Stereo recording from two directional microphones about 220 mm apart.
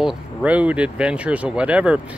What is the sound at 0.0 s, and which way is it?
Speech, 5° right (ahead or behind).